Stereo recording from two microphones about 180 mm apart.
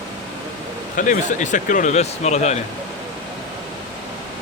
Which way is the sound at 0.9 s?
45° left (ahead or behind).